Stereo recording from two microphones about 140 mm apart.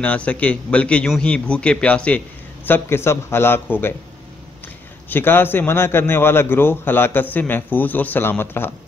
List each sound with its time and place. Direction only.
0.0 s a man's voice: 10° left (ahead or behind)
5.1 s a man's voice: 15° left (ahead or behind)